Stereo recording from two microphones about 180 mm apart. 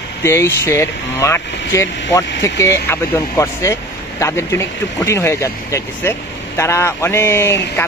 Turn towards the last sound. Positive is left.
turn(degrees=15)  # may be behind; listen again after turning